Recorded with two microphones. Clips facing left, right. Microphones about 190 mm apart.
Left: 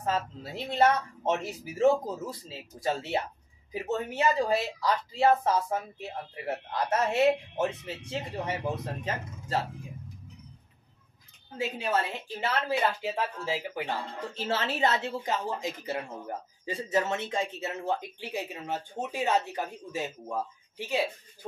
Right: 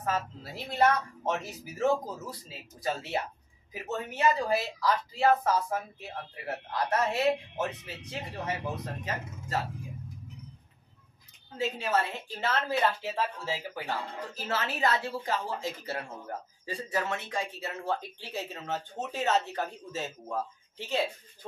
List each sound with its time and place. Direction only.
0.0 s speech: 25° left (ahead or behind)
11.5 s a woman's voice: 10° left (ahead or behind)